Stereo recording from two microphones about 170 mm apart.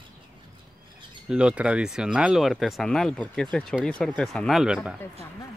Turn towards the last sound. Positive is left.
turn(degrees=0)  # may be behind; listen again after turning